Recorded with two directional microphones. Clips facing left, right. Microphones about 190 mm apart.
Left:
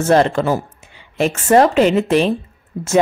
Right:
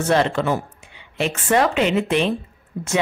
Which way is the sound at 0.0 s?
40° left (ahead or behind).